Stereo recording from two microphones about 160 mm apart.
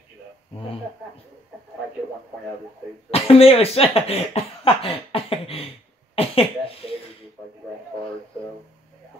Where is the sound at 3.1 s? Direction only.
40° left (ahead or behind).